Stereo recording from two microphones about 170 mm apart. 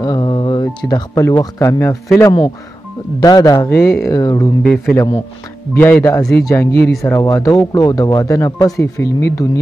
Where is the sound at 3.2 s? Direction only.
20° left (ahead or behind).